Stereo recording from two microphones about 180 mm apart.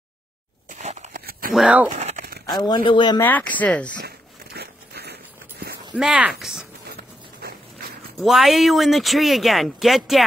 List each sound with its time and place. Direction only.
0.7 s a sound: 40° right (ahead or behind)
1.5 s speech: 5° right (ahead or behind)
1.9 s crumpling: 40° right (ahead or behind)
2.6 s speech: 25° left (ahead or behind)
3.2 s speech: 10° left (ahead or behind)
4.6 s biting: 65° right (ahead or behind)
5.9 s speech: 5° right (ahead or behind)
7.4 s mechanisms: 60° right (ahead or behind)
8.2 s speech: centre (ahead or behind)